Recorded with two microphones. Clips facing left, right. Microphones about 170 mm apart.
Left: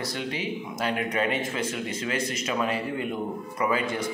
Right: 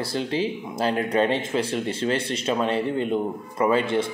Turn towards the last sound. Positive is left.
turn(degrees=-30)  # may be behind; listen again after turning